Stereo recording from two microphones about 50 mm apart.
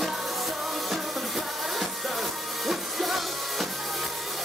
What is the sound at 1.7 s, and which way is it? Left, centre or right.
Music, centre.